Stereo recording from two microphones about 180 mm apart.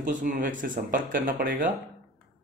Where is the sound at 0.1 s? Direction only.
45° right (ahead or behind).